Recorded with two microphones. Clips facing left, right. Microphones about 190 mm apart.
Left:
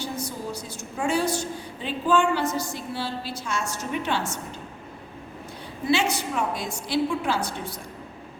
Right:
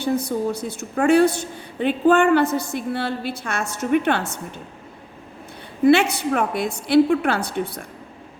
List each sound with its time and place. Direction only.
0.0 s a woman's voice: 60° right (ahead or behind)
5.8 s a woman's voice: 60° right (ahead or behind)